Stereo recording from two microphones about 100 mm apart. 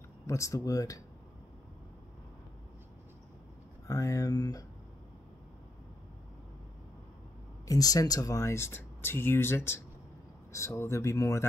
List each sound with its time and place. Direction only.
0.3 s speech: 30° left (ahead or behind)
3.8 s speech: 30° left (ahead or behind)
7.6 s speech: 40° left (ahead or behind)